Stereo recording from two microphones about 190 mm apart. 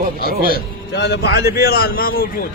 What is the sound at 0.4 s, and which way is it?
A man's voice, 55° left (ahead or behind).